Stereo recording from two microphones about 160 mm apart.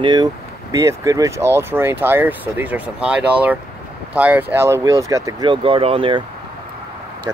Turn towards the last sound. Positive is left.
turn(degrees=-35)  # may be behind; listen again after turning